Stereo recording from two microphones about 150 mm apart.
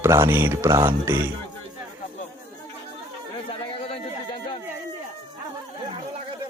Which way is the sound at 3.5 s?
40° left (ahead or behind).